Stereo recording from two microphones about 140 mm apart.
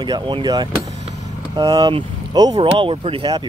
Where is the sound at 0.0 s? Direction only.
35° right (ahead or behind).